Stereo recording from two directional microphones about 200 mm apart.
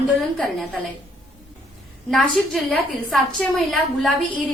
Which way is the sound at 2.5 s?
Centre (ahead or behind).